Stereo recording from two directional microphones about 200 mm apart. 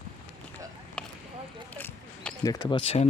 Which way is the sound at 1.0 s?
5° left (ahead or behind).